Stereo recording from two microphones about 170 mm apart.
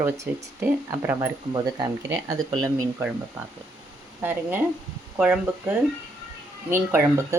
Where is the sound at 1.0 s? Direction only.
20° right (ahead or behind).